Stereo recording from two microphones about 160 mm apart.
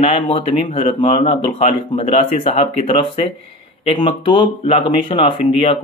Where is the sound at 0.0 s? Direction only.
35° left (ahead or behind).